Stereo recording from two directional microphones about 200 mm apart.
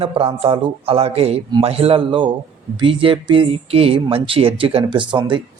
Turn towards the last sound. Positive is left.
turn(degrees=-25)  # may be behind; listen again after turning